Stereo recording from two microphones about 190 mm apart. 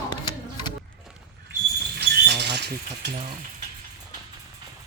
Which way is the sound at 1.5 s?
60° right (ahead or behind).